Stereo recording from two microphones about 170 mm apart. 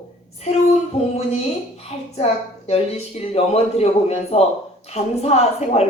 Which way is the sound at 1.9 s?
40° left (ahead or behind).